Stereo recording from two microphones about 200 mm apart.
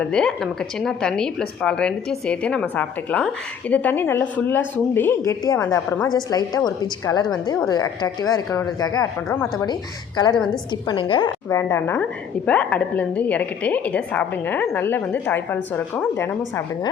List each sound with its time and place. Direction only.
0.0 s a woman's voice: 5° left (ahead or behind)
10.8 s a woman's voice: 25° left (ahead or behind)
11.4 s a woman's voice: 15° left (ahead or behind)